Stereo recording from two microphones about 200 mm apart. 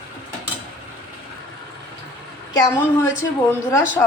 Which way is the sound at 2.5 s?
20° left (ahead or behind).